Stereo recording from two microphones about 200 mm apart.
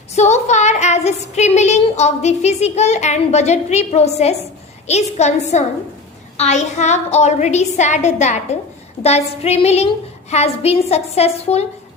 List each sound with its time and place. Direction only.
0.2 s a woman's voice: 35° left (ahead or behind)